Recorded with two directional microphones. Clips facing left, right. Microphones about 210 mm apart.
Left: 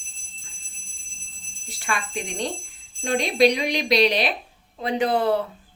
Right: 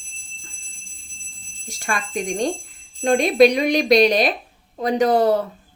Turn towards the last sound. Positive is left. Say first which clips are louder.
# right 5 dB
turn(degrees=-40)  # may be behind; listen again after turning